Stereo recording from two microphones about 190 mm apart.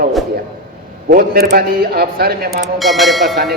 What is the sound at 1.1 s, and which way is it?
A man's voice, 50° right (ahead or behind).